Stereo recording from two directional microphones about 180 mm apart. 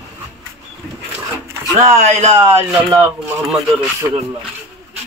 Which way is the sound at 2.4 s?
15° right (ahead or behind).